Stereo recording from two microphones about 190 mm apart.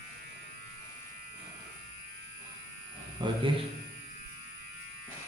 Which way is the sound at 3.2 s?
25° right (ahead or behind).